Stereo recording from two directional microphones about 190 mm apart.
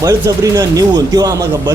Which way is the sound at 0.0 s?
15° right (ahead or behind).